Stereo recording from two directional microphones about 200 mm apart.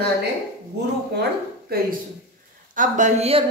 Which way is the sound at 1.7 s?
50° right (ahead or behind).